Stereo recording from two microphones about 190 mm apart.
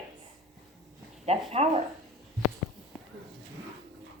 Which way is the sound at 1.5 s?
35° right (ahead or behind).